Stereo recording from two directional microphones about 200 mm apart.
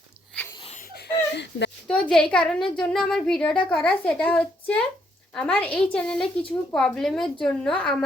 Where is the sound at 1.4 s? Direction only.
60° left (ahead or behind).